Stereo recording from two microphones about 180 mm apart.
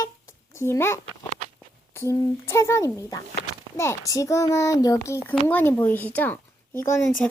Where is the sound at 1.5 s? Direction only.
10° left (ahead or behind).